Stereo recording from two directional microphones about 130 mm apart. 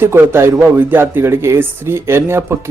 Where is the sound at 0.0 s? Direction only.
20° right (ahead or behind).